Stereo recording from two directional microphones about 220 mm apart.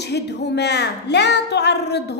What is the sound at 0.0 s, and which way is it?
A woman's voice, 50° left (ahead or behind).